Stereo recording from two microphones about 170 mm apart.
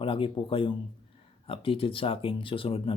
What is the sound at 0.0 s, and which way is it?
Speech, 30° left (ahead or behind).